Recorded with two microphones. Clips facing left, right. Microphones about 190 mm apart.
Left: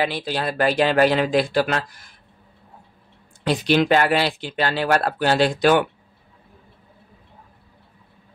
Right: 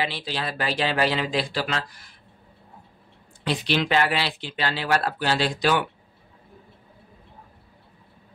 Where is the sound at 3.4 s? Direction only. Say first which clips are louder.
Left 6 dB; 45° left (ahead or behind).